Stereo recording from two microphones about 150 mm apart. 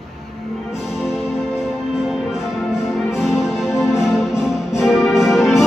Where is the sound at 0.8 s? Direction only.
Centre (ahead or behind).